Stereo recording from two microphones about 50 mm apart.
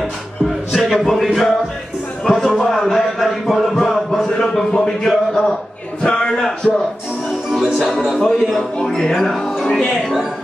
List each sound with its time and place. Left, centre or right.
0.7 s speech: centre
2.2 s a sound: centre
6.0 s a man's voice: centre
7.5 s speech: centre
8.7 s speech: centre